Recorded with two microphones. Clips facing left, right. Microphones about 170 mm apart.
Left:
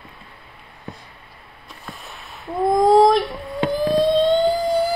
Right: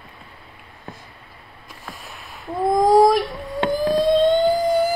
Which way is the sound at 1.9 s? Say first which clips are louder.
Even; centre (ahead or behind).